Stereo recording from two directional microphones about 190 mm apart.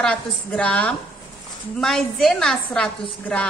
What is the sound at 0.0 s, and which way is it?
A woman's voice, 5° left (ahead or behind).